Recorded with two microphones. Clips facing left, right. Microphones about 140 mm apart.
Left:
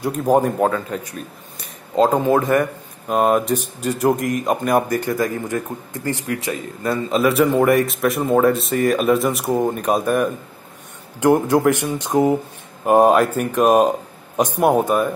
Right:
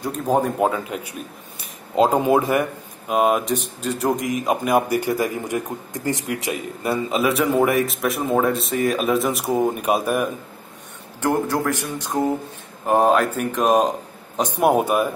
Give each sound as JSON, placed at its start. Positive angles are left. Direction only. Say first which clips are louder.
{"t": 0.0, "sound": "speech", "louder": "left 4 dB", "side_deg": 10}
{"t": 0.6, "sound": "speech", "louder": "left 2 dB", "side_deg": -15}
{"t": 11.1, "sound": "speech", "louder": "left 6 dB", "side_deg": 20}
{"t": 14.6, "sound": "speech", "louder": "left 1 dB", "side_deg": -10}